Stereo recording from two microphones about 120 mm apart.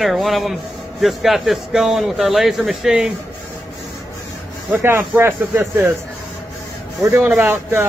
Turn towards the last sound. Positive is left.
turn(degrees=-20)  # may be behind; listen again after turning